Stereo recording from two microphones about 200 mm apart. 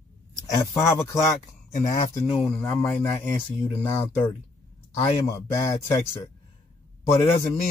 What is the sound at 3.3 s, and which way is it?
Speech, 20° left (ahead or behind).